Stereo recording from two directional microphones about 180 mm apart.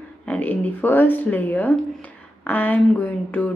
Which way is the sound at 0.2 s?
10° left (ahead or behind).